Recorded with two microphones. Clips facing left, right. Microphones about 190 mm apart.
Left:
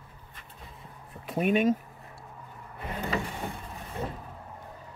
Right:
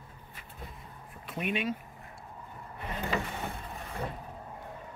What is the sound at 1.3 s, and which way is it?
Speech, 40° left (ahead or behind).